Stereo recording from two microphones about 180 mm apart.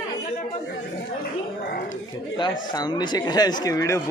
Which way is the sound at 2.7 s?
25° left (ahead or behind).